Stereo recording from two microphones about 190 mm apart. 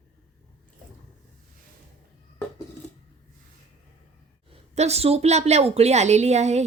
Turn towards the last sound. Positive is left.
turn(degrees=-35)  # may be behind; listen again after turning